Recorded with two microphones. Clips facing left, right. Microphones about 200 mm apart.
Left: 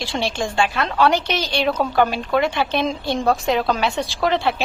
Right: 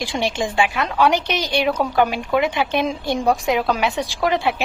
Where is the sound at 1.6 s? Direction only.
5° right (ahead or behind).